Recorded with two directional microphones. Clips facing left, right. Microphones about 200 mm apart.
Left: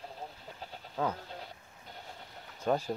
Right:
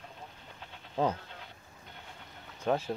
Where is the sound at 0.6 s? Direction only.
35° left (ahead or behind).